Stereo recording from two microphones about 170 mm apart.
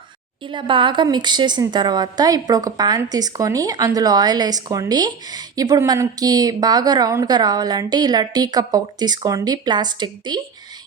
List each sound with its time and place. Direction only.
0.4 s a woman's voice: 30° right (ahead or behind)